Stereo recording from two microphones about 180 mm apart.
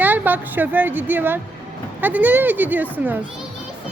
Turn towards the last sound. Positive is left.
turn(degrees=-10)  # may be behind; listen again after turning